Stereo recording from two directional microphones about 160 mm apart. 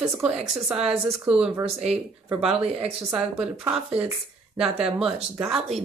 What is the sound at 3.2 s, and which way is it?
Speech, 5° right (ahead or behind).